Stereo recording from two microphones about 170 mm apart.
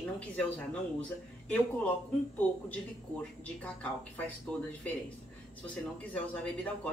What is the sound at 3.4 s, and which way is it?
Speech, 10° left (ahead or behind).